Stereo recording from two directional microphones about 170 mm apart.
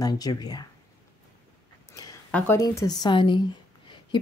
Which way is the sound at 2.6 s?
20° left (ahead or behind).